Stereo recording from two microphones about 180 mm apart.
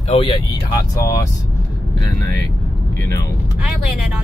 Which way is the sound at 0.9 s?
20° left (ahead or behind).